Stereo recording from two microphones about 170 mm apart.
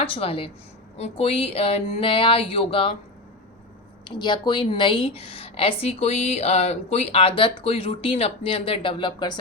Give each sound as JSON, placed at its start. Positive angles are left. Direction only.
{"t": 0.0, "sound": "a woman's voice", "side_deg": 35}
{"t": 4.1, "sound": "a woman's voice", "side_deg": 25}